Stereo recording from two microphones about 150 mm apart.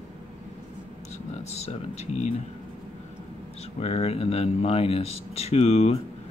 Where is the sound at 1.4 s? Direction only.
45° left (ahead or behind).